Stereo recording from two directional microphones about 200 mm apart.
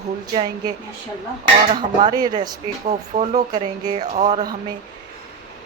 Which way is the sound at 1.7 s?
20° right (ahead or behind).